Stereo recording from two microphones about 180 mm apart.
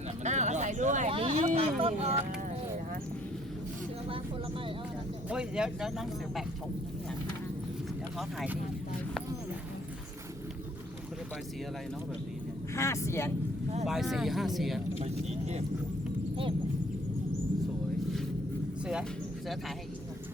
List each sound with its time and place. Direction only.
0.2 s speech: 40° right (ahead or behind)
1.1 s speech: 30° right (ahead or behind)
5.3 s speech: 5° right (ahead or behind)
8.2 s speech: centre (ahead or behind)
12.7 s speech: 15° left (ahead or behind)
13.8 s speech: centre (ahead or behind)
14.9 s speech: 35° right (ahead or behind)